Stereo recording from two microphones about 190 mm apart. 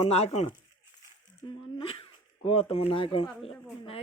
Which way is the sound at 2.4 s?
30° left (ahead or behind).